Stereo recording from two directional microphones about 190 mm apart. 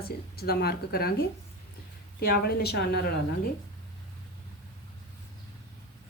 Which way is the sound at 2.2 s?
55° left (ahead or behind).